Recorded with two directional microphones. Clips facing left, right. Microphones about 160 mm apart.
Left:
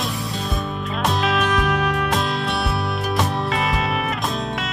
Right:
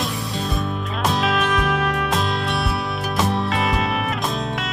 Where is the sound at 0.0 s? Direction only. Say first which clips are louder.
Right 1 dB; centre (ahead or behind).